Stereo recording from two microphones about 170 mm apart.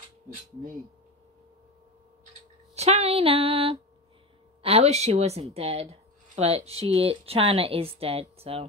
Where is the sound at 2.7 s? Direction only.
40° right (ahead or behind).